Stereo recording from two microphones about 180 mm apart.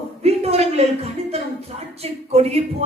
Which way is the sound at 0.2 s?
35° right (ahead or behind).